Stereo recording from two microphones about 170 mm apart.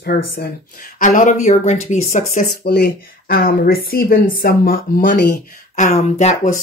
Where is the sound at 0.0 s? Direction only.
60° left (ahead or behind); by 2.4 s 45° left (ahead or behind).